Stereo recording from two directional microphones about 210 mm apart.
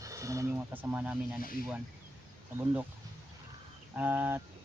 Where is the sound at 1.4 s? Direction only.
45° left (ahead or behind).